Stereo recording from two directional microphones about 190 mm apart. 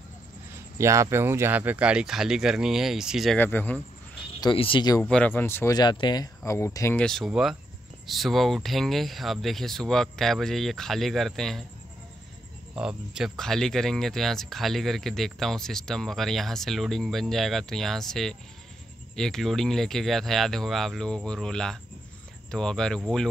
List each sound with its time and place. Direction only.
0.7 s speech: 15° right (ahead or behind)
3.3 s speech: 10° left (ahead or behind)
4.4 s speech: 25° left (ahead or behind)
5.0 s speech: 5° left (ahead or behind)
12.7 s speech: 5° right (ahead or behind)